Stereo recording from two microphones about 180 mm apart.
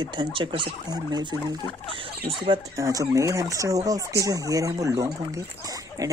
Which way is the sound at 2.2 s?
30° right (ahead or behind).